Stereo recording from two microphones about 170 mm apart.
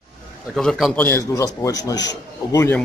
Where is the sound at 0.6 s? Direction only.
Centre (ahead or behind).